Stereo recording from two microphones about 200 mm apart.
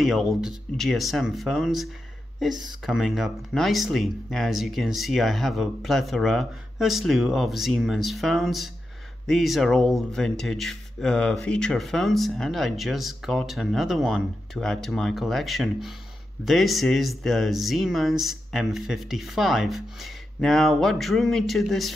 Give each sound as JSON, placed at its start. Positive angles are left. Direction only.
{"t": 0.0, "sound": "speech", "side_deg": 0}